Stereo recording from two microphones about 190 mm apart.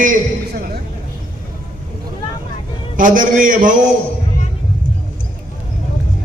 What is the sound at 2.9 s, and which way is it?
Speech, 45° right (ahead or behind).